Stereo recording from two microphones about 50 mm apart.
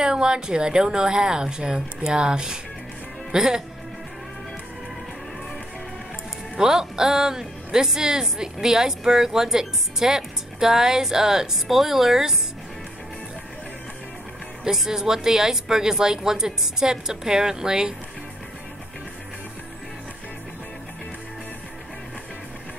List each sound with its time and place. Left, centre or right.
0.0 s speech: centre
6.5 s speech: centre
14.6 s speech: centre